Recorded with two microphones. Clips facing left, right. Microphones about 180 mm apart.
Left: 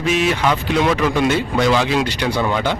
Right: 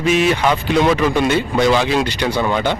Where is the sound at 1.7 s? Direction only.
Centre (ahead or behind).